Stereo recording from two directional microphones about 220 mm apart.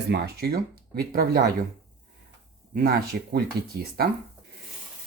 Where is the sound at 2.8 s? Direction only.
45° right (ahead or behind).